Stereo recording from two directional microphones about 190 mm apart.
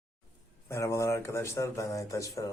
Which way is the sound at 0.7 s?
15° left (ahead or behind).